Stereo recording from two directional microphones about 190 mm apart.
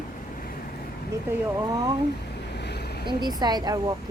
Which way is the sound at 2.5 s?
60° left (ahead or behind).